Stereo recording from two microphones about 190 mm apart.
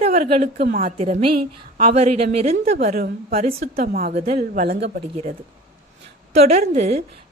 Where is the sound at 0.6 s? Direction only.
50° right (ahead or behind).